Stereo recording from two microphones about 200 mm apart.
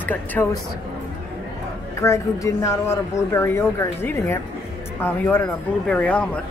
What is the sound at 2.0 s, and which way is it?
Speech, 15° left (ahead or behind).